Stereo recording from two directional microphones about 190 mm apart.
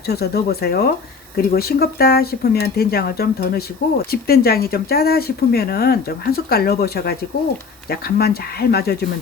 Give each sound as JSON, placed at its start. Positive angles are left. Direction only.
{"t": 0.0, "sound": "speech", "side_deg": 55}